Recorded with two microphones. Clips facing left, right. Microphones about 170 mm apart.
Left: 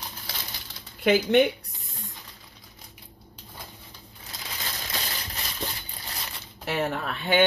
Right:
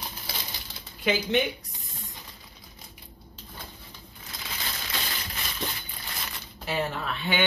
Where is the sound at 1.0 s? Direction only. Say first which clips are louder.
Left 6 dB; 60° left (ahead or behind).